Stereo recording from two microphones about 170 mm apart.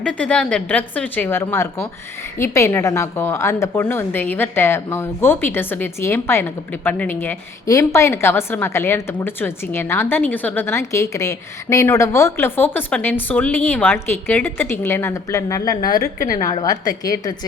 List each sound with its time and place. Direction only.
0.0 s a woman's voice: 5° left (ahead or behind)